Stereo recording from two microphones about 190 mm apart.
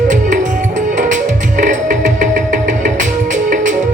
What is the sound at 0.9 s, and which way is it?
Music, 40° right (ahead or behind).